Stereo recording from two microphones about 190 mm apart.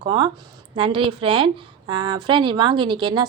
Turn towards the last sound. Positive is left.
turn(degrees=-25)  # may be behind; listen again after turning